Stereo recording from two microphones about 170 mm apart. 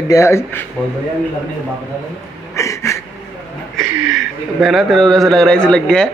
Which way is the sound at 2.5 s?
15° left (ahead or behind).